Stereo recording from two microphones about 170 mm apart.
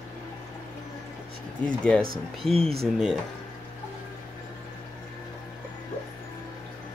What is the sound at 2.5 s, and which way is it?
Speech, 35° right (ahead or behind).